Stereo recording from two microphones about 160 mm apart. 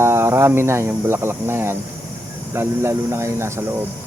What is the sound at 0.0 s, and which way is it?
Speech, 15° right (ahead or behind).